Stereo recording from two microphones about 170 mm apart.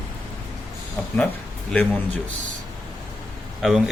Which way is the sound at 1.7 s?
10° left (ahead or behind).